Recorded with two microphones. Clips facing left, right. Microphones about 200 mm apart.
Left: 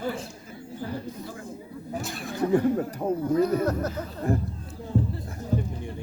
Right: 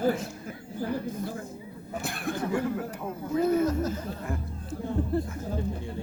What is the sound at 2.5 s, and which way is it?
Speech, 35° left (ahead or behind).